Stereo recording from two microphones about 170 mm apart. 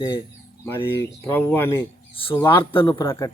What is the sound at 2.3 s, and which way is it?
Speech, 15° left (ahead or behind).